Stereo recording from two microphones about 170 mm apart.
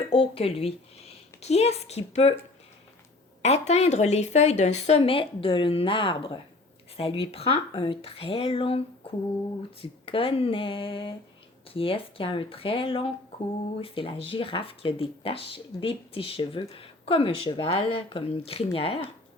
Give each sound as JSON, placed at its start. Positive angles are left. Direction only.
{"t": 0.1, "sound": "a woman's voice", "side_deg": 35}
{"t": 3.4, "sound": "speech", "side_deg": 40}
{"t": 9.8, "sound": "speech", "side_deg": 30}